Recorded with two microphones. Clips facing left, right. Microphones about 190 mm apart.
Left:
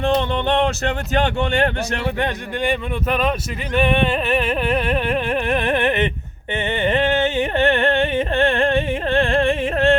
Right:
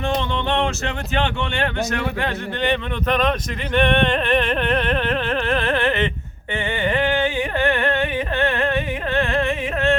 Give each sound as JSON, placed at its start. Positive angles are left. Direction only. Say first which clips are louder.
{"t": 0.0, "sound": "speech", "louder": "left 4 dB", "side_deg": 40}
{"t": 2.1, "sound": "music", "louder": "left 2 dB", "side_deg": 15}
{"t": 6.7, "sound": "carnatic music", "louder": "left 2 dB", "side_deg": 25}